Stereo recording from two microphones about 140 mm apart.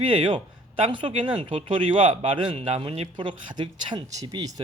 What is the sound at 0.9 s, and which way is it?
Speech, 35° right (ahead or behind).